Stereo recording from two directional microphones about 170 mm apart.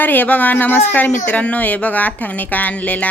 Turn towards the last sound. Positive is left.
turn(degrees=10)  # may be behind; listen again after turning